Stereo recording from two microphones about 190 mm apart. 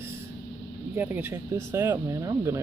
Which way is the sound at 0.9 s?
10° right (ahead or behind).